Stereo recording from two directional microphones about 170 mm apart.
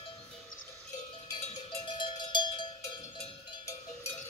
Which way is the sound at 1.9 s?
30° left (ahead or behind).